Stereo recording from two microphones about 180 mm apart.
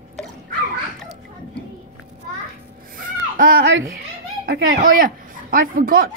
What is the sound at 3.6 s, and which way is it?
Speech, 85° right.